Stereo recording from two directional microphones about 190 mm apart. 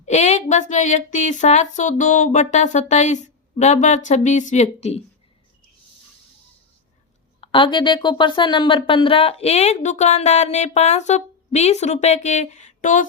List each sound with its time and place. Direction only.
0.0 s speech: 35° left (ahead or behind)
7.4 s speech: 25° left (ahead or behind); by 13.1 s 40° left (ahead or behind)